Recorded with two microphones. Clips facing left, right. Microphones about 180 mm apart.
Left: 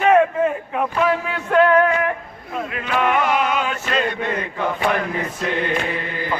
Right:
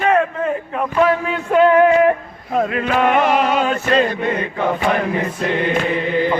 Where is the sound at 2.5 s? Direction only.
45° right (ahead or behind).